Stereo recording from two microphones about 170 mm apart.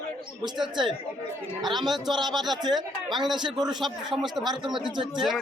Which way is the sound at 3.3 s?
25° right (ahead or behind).